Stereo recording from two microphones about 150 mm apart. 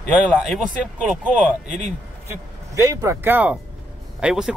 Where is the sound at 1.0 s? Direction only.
10° right (ahead or behind).